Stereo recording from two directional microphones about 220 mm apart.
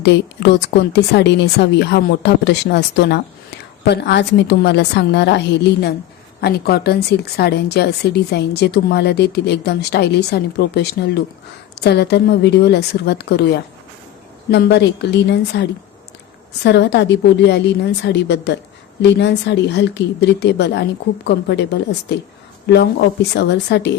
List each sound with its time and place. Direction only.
0.0 s speech: 50° left (ahead or behind)
16.6 s speech: 50° left (ahead or behind)